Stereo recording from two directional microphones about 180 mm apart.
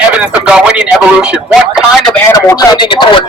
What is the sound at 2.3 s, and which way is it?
Speech, 20° left (ahead or behind).